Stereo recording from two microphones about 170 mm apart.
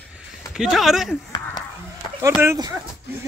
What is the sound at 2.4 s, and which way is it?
Speech, 15° right (ahead or behind).